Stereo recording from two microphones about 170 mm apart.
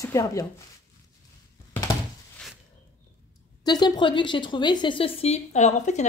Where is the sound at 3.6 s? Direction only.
25° left (ahead or behind); by 6.0 s 45° left (ahead or behind).